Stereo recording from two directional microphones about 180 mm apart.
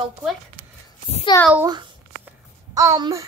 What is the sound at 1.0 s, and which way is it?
Speech, 30° left (ahead or behind).